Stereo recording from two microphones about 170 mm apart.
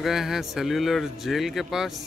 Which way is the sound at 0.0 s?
Centre (ahead or behind).